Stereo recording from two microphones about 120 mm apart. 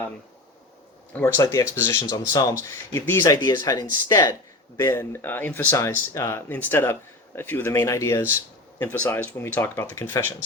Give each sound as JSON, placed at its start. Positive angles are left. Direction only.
{"t": 1.4, "sound": "speech", "side_deg": 25}
{"t": 2.0, "sound": "speech", "side_deg": 30}